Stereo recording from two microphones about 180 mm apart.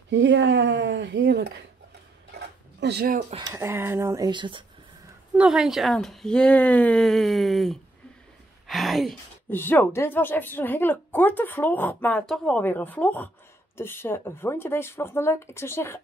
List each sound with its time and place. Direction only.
0.1 s speech: 85° right
2.8 s speech: 65° right (ahead or behind)
3.3 s speech: 20° right (ahead or behind)
5.3 s speech: 5° right (ahead or behind)
9.5 s a woman's voice: 10° left (ahead or behind)